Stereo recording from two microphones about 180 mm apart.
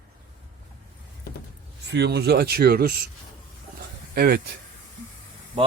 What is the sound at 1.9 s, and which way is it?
Speech, 70° right (ahead or behind).